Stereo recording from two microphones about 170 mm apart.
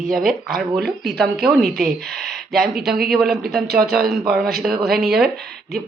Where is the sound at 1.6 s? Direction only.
60° right (ahead or behind).